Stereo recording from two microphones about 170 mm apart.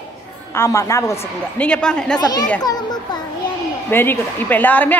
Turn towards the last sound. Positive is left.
turn(degrees=10)  # may be behind; listen again after turning